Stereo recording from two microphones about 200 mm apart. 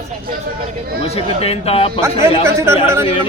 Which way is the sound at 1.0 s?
30° left (ahead or behind).